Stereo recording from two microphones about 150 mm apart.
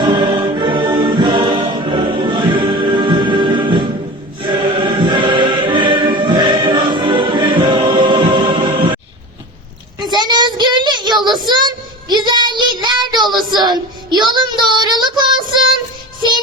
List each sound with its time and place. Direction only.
0.0 s choir: 30° right (ahead or behind)
10.0 s child singing: 30° right (ahead or behind)